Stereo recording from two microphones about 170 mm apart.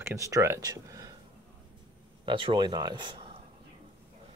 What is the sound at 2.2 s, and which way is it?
Speech, 30° right (ahead or behind).